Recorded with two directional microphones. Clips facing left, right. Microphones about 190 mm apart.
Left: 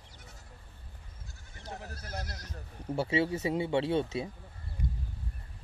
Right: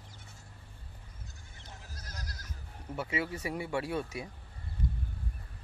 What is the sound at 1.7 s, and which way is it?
Goat, 65° left (ahead or behind).